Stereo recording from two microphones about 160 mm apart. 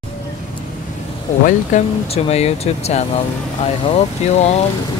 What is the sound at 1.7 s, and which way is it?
Speech, 50° left (ahead or behind).